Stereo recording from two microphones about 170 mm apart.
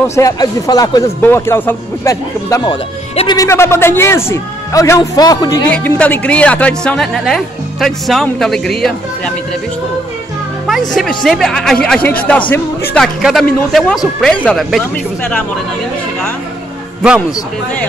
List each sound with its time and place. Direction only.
0.0 s speech: 15° left (ahead or behind)
5.7 s speech: 10° left (ahead or behind)
10.7 s speech: centre (ahead or behind)